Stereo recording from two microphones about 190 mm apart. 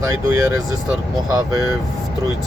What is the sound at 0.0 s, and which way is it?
Speech, 15° right (ahead or behind).